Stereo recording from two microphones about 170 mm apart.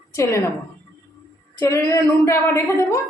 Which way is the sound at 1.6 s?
15° left (ahead or behind).